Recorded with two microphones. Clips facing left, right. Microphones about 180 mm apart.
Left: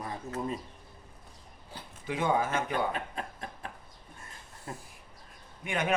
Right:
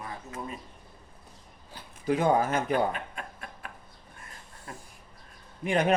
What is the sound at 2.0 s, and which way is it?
Speech, 40° right (ahead or behind).